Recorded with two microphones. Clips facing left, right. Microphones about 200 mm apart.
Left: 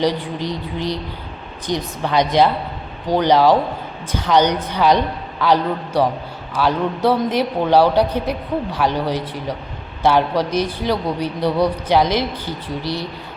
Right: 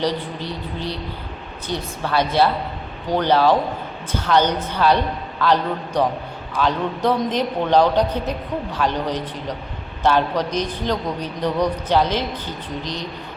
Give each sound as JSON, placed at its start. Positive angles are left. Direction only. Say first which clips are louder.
{"t": 0.0, "sound": "speech", "louder": "left 4 dB", "side_deg": 15}